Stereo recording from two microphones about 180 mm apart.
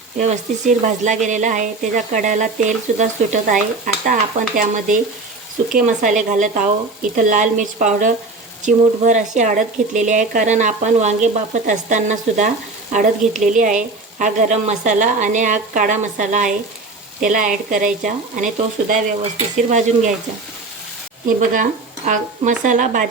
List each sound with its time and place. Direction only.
0.2 s speech: 40° right (ahead or behind)
21.2 s speech: 45° right (ahead or behind)